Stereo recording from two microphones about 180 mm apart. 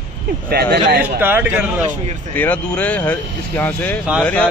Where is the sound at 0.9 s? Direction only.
10° right (ahead or behind).